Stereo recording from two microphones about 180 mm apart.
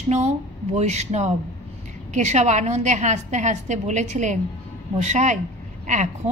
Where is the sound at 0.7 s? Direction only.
40° right (ahead or behind).